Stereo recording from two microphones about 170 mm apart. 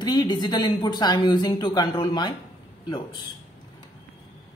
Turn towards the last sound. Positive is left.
turn(degrees=30)  # may be behind; listen again after turning